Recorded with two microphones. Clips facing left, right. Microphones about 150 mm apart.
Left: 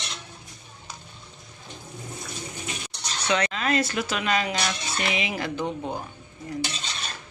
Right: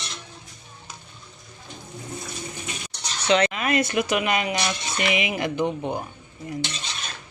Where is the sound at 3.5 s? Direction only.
15° right (ahead or behind).